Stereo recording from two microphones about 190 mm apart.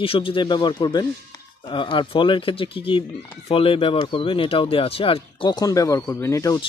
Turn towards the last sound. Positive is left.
turn(degrees=15)  # may be behind; listen again after turning